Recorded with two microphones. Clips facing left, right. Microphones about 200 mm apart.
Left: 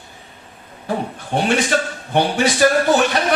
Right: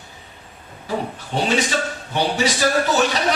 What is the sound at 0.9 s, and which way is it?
A man's voice, 55° left (ahead or behind).